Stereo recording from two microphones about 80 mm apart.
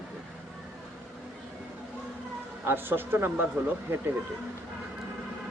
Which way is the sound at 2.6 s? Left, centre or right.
Right.